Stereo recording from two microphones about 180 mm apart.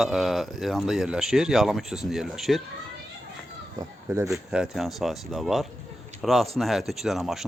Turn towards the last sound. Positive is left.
turn(degrees=0)  # may be behind; listen again after turning